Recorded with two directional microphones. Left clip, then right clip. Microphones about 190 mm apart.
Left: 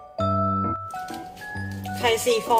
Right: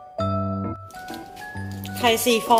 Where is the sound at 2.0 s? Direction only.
45° right (ahead or behind).